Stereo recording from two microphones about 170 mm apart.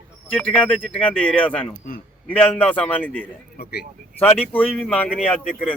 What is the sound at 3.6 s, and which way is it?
Speech, 70° left (ahead or behind).